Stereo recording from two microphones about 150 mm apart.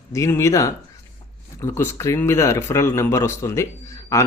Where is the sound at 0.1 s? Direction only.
20° left (ahead or behind).